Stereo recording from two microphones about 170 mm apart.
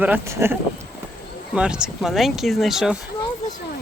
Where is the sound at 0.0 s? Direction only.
10° right (ahead or behind).